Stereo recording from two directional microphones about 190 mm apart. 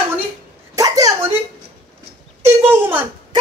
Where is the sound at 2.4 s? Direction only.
10° right (ahead or behind).